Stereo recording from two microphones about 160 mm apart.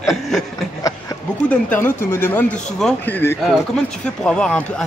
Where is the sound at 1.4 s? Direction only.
10° left (ahead or behind).